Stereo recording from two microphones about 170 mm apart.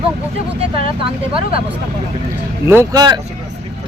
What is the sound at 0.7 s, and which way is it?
Speech, 35° right (ahead or behind).